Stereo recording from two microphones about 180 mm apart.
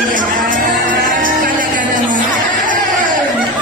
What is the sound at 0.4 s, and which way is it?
Music, 50° right (ahead or behind).